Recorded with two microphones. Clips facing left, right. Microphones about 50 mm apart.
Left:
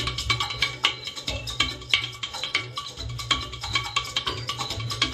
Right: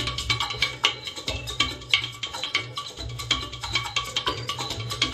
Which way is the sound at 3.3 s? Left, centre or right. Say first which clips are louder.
Left 1 dB; centre.